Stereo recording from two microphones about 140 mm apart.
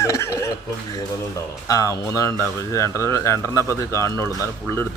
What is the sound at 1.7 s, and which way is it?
Speech, 25° left (ahead or behind).